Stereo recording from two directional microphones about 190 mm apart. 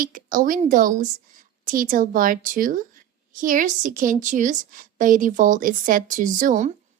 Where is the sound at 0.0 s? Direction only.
45° right (ahead or behind).